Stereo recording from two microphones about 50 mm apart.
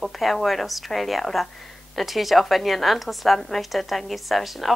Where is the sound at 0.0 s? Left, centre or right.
Centre.